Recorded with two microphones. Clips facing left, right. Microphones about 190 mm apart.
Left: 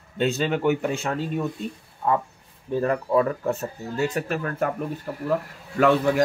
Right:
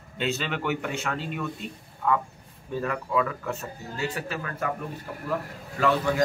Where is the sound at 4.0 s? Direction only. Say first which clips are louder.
Left 6 dB; 50° left (ahead or behind).